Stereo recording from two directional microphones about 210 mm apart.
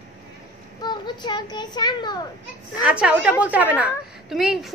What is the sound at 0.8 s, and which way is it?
A child's voice, 20° left (ahead or behind).